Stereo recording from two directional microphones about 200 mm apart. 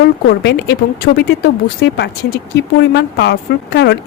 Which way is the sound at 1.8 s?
60° left (ahead or behind).